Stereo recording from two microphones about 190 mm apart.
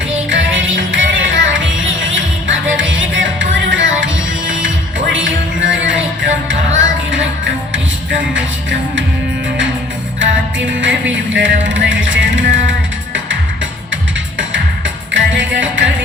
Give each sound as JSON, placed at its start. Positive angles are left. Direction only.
{"t": 0.3, "sound": "music", "side_deg": -80}
{"t": 11.3, "sound": "music", "side_deg": -80}
{"t": 13.9, "sound": "music", "side_deg": -80}